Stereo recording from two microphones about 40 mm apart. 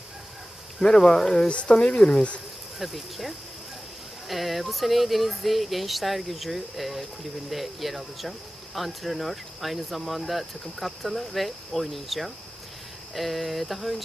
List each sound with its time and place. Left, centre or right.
0.8 s speech: centre
1.5 s speech: left
2.7 s speech: centre